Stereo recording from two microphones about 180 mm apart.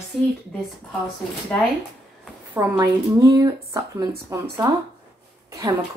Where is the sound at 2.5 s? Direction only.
20° right (ahead or behind).